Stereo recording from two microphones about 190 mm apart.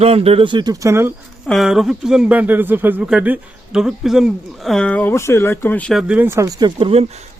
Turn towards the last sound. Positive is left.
turn(degrees=-30)  # may be behind; listen again after turning